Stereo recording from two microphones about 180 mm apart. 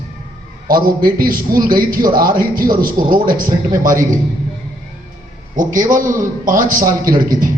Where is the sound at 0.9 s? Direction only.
50° right (ahead or behind).